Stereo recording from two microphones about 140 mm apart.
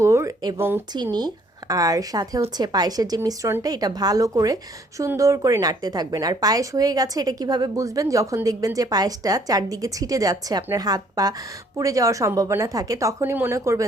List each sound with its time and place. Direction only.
0.0 s speech: 20° right (ahead or behind)
1.1 s a woman's voice: 30° right (ahead or behind)